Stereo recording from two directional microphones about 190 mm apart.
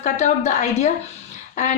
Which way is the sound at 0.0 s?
35° left (ahead or behind).